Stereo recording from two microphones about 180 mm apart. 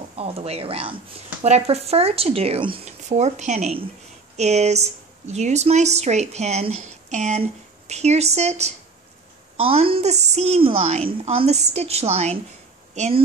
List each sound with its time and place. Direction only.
0.1 s a woman's voice: 35° right (ahead or behind)